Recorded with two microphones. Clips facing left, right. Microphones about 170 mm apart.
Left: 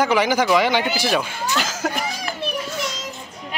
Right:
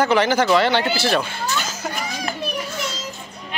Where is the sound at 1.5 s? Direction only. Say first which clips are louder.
Left 3 dB; 90° left.